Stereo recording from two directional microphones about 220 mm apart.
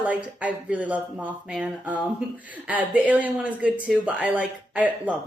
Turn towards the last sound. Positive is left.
turn(degrees=-5)  # may be behind; listen again after turning